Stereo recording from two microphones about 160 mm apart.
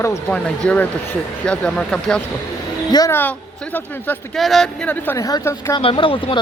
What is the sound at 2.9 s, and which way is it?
Speech, 25° left (ahead or behind).